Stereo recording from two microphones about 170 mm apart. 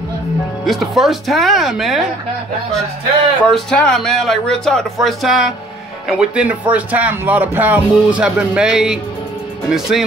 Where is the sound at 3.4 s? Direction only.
Centre (ahead or behind).